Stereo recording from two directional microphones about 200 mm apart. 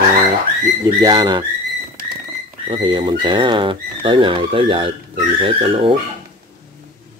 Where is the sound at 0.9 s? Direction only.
20° right (ahead or behind).